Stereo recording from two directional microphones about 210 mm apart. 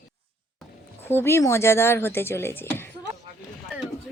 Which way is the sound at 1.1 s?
10° left (ahead or behind).